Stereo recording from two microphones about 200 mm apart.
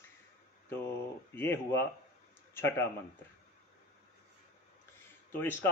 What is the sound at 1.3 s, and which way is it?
Speech, 10° left (ahead or behind).